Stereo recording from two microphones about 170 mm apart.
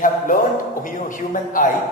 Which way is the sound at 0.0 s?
50° left (ahead or behind).